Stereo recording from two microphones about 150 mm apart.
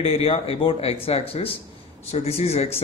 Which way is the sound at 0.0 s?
40° left (ahead or behind).